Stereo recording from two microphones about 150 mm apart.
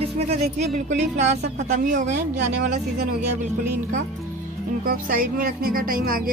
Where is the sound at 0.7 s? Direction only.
55° right (ahead or behind).